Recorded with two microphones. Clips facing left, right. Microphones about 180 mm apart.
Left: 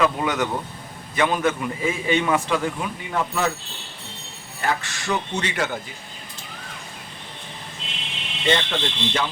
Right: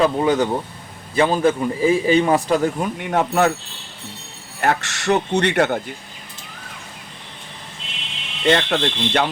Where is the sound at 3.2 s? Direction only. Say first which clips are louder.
Right 6 dB; 60° right (ahead or behind).